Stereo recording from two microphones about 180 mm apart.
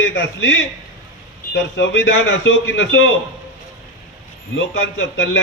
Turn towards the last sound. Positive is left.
turn(degrees=90)